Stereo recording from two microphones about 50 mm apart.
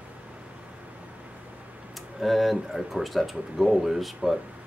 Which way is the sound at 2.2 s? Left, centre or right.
Centre.